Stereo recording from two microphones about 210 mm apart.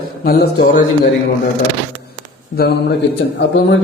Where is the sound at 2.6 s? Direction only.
45° left (ahead or behind).